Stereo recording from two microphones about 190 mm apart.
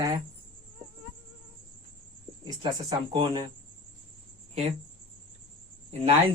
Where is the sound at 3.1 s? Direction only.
25° right (ahead or behind).